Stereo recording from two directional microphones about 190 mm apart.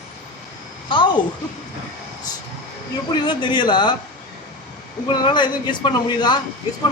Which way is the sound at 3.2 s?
25° left (ahead or behind).